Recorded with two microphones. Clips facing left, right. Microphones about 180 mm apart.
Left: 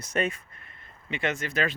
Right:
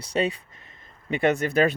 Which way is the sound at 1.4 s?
45° right (ahead or behind).